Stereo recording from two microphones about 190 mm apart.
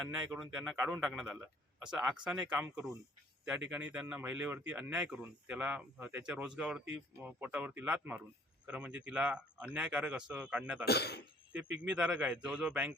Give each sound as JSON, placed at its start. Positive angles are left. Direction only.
{"t": 0.0, "sound": "a man's voice", "side_deg": -5}
{"t": 10.8, "sound": "speech", "side_deg": 60}
{"t": 11.5, "sound": "speech", "side_deg": -5}